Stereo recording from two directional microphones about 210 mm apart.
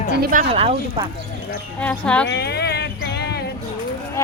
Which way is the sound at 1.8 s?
5° left (ahead or behind).